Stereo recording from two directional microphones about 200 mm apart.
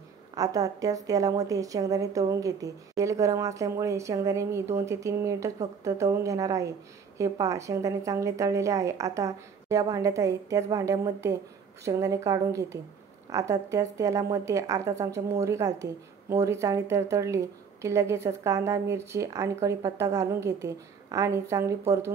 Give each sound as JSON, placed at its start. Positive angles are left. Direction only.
{"t": 0.3, "sound": "a woman's voice", "side_deg": -20}